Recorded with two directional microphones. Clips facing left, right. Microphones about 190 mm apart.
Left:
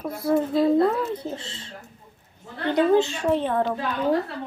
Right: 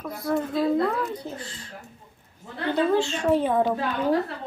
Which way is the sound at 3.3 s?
10° right (ahead or behind).